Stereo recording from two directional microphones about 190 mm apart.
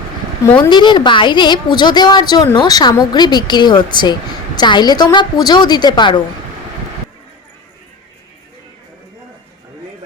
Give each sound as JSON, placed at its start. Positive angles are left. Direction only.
{"t": 0.7, "sound": "a woman's voice", "side_deg": 25}